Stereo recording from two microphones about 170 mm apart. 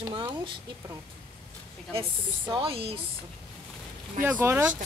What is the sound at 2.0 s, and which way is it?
Speech, 30° right (ahead or behind).